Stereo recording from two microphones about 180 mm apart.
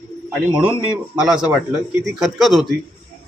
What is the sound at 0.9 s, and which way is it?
Speech, 5° right (ahead or behind).